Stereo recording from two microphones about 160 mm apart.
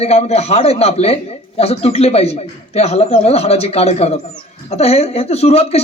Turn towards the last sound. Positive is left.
turn(degrees=40)  # may be behind; listen again after turning